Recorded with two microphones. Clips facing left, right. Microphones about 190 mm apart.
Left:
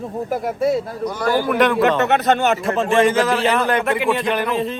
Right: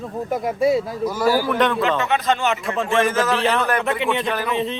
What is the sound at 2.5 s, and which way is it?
Speech, 40° left (ahead or behind).